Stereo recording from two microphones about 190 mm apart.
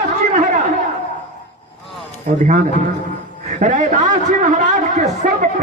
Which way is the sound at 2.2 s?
40° right (ahead or behind).